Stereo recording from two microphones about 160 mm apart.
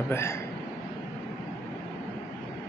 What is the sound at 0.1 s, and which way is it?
Speech, 15° left (ahead or behind).